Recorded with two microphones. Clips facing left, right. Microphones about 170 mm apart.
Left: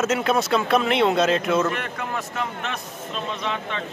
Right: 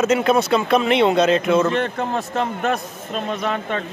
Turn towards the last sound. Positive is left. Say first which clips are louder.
# right 5 dB
turn(degrees=-50)  # may be behind; listen again after turning